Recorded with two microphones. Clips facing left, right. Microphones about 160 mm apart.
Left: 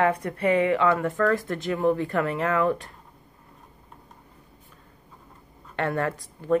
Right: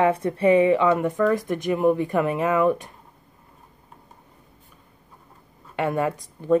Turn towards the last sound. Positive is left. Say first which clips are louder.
# right 3 dB
turn(degrees=-15)  # may be behind; listen again after turning